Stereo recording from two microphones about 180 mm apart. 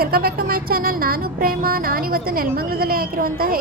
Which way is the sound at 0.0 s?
55° right (ahead or behind).